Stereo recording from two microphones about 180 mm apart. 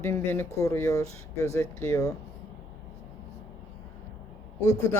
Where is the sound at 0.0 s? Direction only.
10° left (ahead or behind).